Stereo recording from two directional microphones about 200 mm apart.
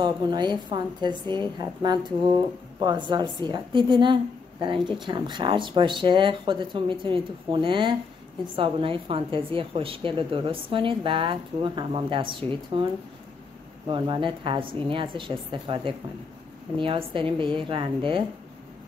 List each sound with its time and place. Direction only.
0.0 s a woman's voice: 20° right (ahead or behind)
13.8 s a woman's voice: 25° right (ahead or behind)